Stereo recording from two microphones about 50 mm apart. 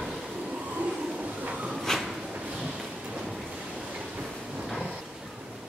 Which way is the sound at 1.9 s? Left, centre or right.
Centre.